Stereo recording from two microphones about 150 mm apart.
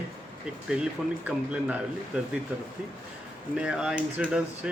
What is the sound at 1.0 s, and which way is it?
Speech, 5° right (ahead or behind).